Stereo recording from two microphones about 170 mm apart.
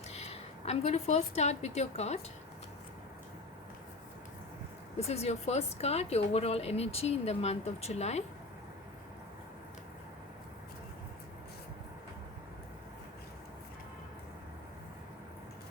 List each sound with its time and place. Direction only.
0.1 s a woman's voice: 40° left (ahead or behind)
4.9 s a woman's voice: 40° left (ahead or behind)